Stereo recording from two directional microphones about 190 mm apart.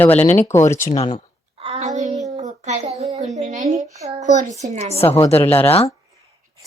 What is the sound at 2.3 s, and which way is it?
Child singing, 35° right (ahead or behind).